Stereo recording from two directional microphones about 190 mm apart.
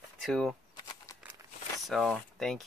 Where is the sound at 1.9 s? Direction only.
Centre (ahead or behind).